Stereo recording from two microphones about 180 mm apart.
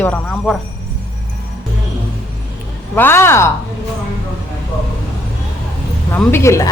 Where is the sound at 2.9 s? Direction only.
10° left (ahead or behind).